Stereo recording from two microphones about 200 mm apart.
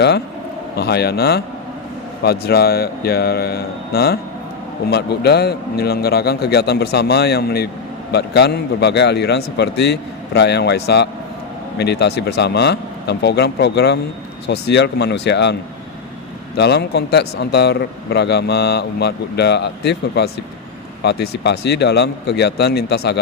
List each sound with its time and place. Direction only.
0.8 s a man's voice: 55° left (ahead or behind)
16.6 s speech: 55° left (ahead or behind)